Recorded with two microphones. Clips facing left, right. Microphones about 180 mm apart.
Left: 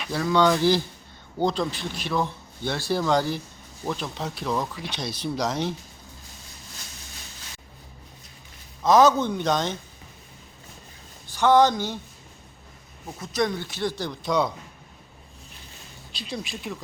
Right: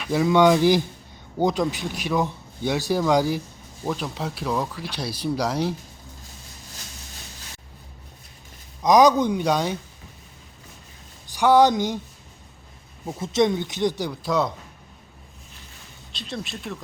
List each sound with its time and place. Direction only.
0.1 s speech: 15° right (ahead or behind)
8.8 s speech: 15° right (ahead or behind)
11.3 s speech: 10° right (ahead or behind)
13.1 s speech: 25° right (ahead or behind)
14.3 s speech: centre (ahead or behind)
16.1 s speech: centre (ahead or behind)